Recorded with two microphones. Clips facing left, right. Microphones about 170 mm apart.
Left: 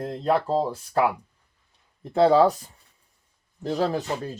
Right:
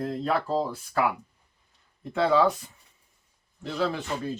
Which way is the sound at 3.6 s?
40° left (ahead or behind).